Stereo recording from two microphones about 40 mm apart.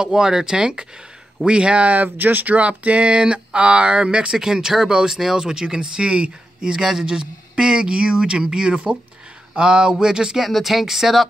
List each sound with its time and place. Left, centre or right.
0.0 s a man's voice: centre
1.9 s speech: right
4.3 s speech: centre
6.7 s a man's voice: centre
10.4 s speech: centre